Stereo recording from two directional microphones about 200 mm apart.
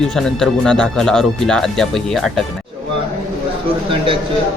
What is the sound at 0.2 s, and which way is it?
Speech, centre (ahead or behind).